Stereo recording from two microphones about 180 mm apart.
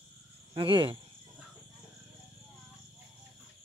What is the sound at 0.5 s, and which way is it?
Speech, 30° right (ahead or behind).